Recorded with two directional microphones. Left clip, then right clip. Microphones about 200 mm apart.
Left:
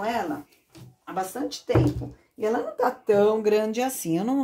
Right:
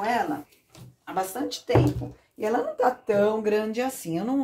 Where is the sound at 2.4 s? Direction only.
30° left (ahead or behind).